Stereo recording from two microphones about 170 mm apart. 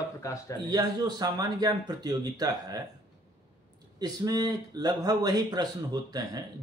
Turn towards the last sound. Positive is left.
turn(degrees=-20)  # may be behind; listen again after turning